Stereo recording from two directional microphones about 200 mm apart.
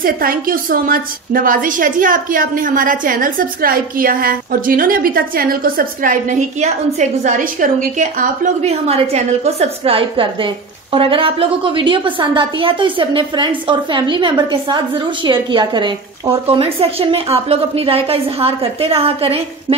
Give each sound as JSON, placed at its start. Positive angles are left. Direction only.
{"t": 0.0, "sound": "a woman's voice", "side_deg": -45}